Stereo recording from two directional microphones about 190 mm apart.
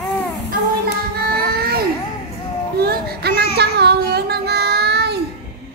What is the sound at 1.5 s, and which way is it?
Baby cry, 55° right (ahead or behind).